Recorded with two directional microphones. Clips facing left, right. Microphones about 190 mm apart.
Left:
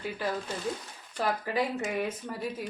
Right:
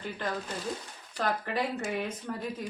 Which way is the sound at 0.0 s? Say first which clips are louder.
Left 2 dB; 5° left (ahead or behind).